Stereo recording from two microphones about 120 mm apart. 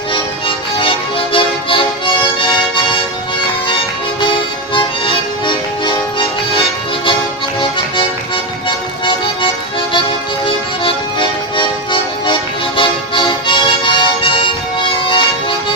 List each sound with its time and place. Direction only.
0.1 s music: 45° left (ahead or behind)
4.7 s music: 45° left (ahead or behind)
9.0 s music: 45° left (ahead or behind)